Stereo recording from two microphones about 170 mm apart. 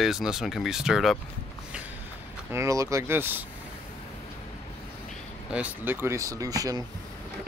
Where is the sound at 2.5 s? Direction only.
15° right (ahead or behind).